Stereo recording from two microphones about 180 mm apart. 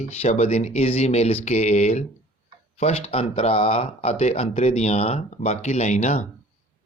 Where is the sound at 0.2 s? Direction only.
35° left (ahead or behind).